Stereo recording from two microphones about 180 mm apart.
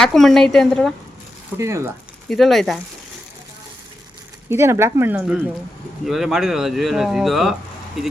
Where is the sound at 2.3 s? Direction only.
Centre (ahead or behind).